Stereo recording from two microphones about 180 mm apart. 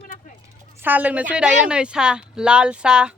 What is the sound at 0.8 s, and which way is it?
Speech, 10° right (ahead or behind).